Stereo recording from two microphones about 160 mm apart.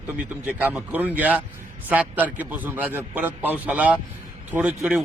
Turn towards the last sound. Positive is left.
turn(degrees=-5)  # may be behind; listen again after turning